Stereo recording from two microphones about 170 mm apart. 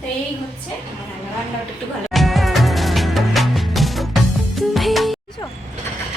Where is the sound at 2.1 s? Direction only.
Centre (ahead or behind).